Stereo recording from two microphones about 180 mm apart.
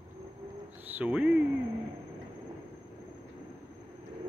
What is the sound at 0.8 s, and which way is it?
Speech, 10° right (ahead or behind).